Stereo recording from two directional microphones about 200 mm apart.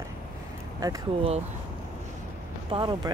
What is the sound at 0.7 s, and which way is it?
Speech, 20° right (ahead or behind).